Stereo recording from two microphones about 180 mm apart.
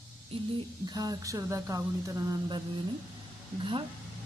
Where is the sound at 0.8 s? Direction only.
20° right (ahead or behind).